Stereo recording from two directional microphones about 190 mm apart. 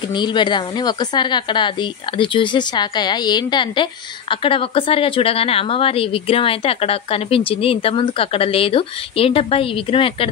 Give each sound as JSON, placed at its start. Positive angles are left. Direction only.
{"t": 0.1, "sound": "a woman's voice", "side_deg": 25}